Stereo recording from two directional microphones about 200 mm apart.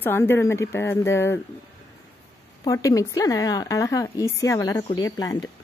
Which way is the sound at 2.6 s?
15° left (ahead or behind).